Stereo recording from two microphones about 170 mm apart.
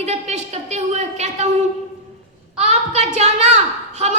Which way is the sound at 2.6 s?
40° right (ahead or behind).